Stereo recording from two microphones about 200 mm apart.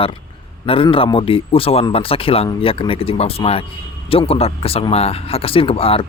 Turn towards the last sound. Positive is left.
turn(degrees=30)  # may be behind; listen again after turning